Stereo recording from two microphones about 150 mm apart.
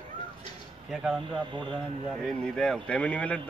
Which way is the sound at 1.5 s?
35° right (ahead or behind).